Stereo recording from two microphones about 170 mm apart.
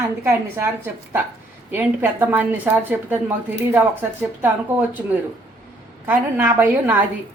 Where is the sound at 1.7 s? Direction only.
10° right (ahead or behind).